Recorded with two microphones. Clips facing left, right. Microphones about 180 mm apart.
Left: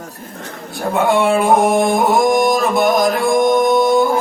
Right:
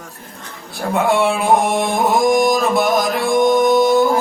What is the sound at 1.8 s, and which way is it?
Music, centre (ahead or behind).